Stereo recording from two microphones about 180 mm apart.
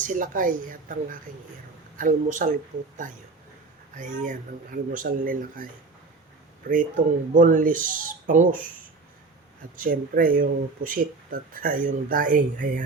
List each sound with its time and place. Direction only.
0.0 s speech: 50° right (ahead or behind)
9.7 s speech: 50° right (ahead or behind)